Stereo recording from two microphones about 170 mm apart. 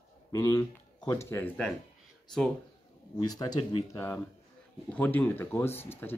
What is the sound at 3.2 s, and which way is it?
Speech, 20° left (ahead or behind).